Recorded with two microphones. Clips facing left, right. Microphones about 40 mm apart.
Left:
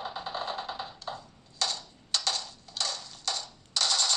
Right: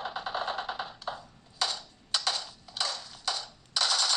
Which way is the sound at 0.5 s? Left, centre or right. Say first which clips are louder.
Right 2 dB; right.